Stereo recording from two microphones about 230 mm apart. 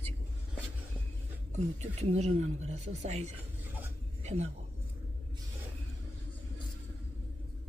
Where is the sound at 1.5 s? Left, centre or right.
Right.